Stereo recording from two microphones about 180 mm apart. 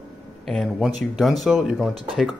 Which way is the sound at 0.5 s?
Centre (ahead or behind).